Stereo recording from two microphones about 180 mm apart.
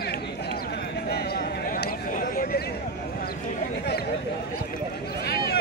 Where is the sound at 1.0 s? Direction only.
65° left (ahead or behind).